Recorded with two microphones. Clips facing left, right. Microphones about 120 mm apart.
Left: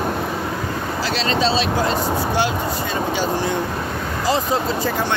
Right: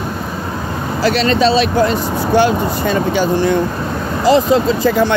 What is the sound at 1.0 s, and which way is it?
Speech, 60° right (ahead or behind).